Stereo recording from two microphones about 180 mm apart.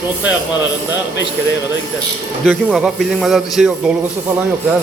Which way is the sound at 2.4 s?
Centre (ahead or behind).